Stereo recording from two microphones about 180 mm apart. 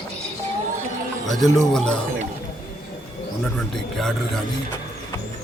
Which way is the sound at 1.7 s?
5° left (ahead or behind).